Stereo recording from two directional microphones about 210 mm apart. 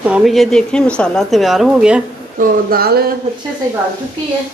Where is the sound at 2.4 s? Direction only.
40° right (ahead or behind).